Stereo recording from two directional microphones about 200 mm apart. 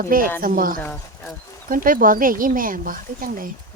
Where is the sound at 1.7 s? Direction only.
45° right (ahead or behind).